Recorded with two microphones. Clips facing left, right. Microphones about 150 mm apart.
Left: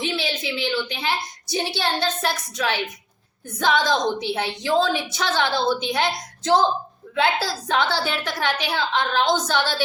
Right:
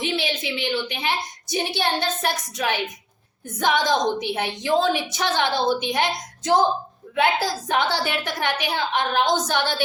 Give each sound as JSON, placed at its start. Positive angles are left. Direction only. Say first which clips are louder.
{"t": 0.0, "sound": "a woman's voice", "louder": "right 1 dB", "side_deg": -15}